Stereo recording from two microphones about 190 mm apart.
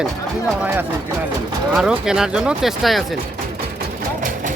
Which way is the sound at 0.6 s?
10° right (ahead or behind).